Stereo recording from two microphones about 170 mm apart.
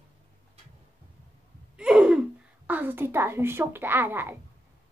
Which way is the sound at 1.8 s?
5° right (ahead or behind).